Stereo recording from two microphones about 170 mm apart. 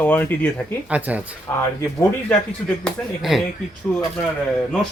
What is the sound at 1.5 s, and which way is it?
Speech, 15° left (ahead or behind).